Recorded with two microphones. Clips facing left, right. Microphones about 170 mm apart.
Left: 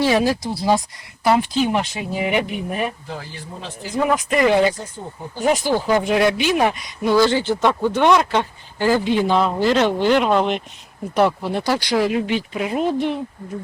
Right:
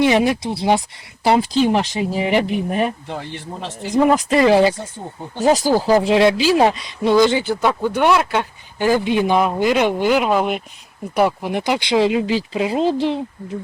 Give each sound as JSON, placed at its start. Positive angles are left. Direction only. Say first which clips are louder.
{"t": 0.0, "sound": "speech", "louder": "right 2 dB", "side_deg": -20}
{"t": 3.1, "sound": "speech", "louder": "right 4 dB", "side_deg": -65}
{"t": 4.1, "sound": "speech", "louder": "right 1 dB", "side_deg": -30}